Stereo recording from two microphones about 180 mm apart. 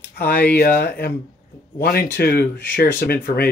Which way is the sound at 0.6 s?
55° left (ahead or behind).